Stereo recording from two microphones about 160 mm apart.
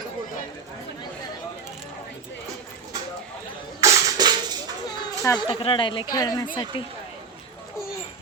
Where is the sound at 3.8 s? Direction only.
20° right (ahead or behind).